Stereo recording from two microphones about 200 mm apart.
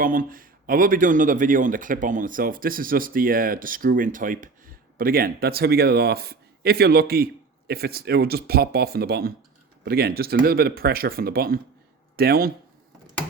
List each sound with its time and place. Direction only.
0.0 s speech: 45° right (ahead or behind)